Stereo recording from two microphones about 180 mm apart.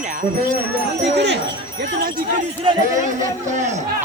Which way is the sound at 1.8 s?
55° right (ahead or behind).